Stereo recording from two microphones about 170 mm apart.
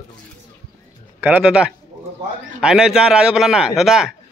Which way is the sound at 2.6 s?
5° right (ahead or behind).